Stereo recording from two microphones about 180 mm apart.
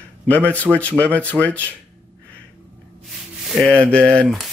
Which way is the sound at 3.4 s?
Centre (ahead or behind).